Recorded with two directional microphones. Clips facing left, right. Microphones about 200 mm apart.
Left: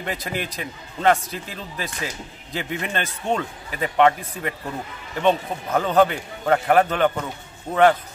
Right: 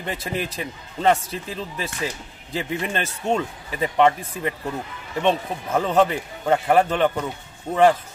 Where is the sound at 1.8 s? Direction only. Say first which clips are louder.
Right 2 dB; 30° right (ahead or behind).